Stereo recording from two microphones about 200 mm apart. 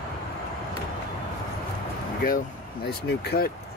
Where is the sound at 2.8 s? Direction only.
55° left (ahead or behind).